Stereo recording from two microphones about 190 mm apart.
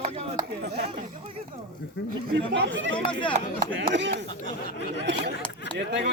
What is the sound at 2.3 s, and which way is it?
Speech, 65° right (ahead or behind).